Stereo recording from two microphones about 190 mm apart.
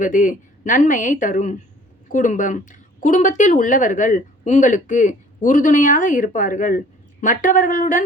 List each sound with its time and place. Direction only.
0.0 s speech: 45° left (ahead or behind)